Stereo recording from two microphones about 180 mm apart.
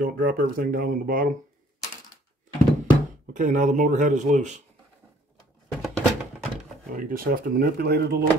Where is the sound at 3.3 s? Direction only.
45° right (ahead or behind).